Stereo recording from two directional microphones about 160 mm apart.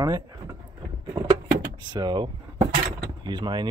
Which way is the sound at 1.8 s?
25° right (ahead or behind).